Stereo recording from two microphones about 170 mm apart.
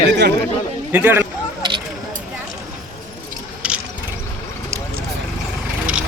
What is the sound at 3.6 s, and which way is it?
Ratchet, 5° right (ahead or behind).